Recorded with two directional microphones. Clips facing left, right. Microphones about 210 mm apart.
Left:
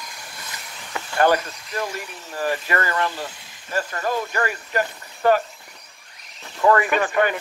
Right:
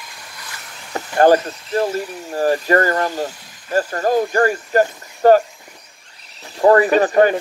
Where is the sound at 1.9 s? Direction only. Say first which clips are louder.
Right 9 dB; 40° right (ahead or behind).